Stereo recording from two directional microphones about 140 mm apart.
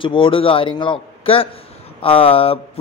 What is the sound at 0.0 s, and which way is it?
A man's voice, 40° left (ahead or behind).